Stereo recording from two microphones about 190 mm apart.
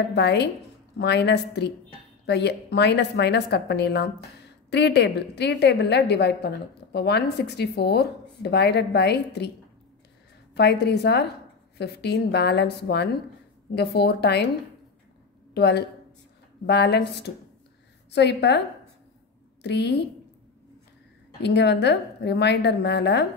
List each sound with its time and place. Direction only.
0.1 s a woman's voice: 65° left (ahead or behind)
10.5 s a woman's voice: 60° left (ahead or behind)
15.5 s a woman's voice: 60° left (ahead or behind)
19.6 s a woman's voice: 65° left (ahead or behind)
21.4 s a woman's voice: 65° left (ahead or behind)